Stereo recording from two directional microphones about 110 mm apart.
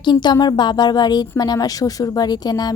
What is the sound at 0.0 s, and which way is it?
A woman's voice, 40° left (ahead or behind).